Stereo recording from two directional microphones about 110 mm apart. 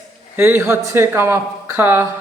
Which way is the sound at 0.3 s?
20° right (ahead or behind).